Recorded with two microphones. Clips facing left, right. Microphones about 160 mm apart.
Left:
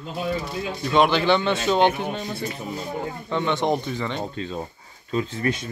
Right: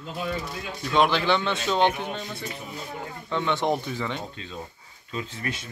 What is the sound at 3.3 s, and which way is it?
Speech, centre (ahead or behind).